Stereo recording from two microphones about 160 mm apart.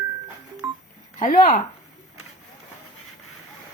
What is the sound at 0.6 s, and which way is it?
Telephone dialing, 15° right (ahead or behind).